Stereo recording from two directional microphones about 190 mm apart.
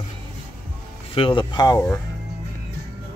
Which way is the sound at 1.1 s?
25° left (ahead or behind).